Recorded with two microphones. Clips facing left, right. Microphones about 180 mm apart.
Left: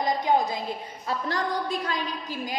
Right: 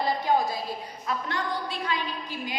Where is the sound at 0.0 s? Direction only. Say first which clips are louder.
Left 1 dB; 15° left (ahead or behind).